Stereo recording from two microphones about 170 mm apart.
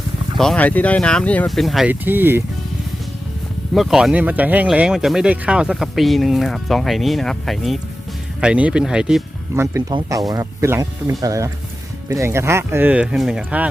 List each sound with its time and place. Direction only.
0.3 s speech: 5° left (ahead or behind)
1.9 s speech: 10° right (ahead or behind)
3.8 s speech: centre (ahead or behind)
9.5 s speech: 20° right (ahead or behind)